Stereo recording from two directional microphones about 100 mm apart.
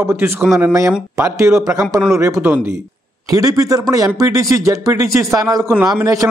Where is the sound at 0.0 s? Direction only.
25° right (ahead or behind).